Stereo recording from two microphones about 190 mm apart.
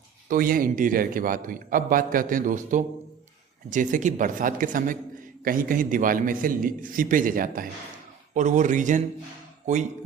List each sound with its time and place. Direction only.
0.3 s a man's voice: 50° right (ahead or behind)